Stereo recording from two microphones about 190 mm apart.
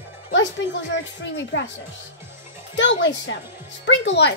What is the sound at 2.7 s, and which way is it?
A child's voice, 70° left (ahead or behind).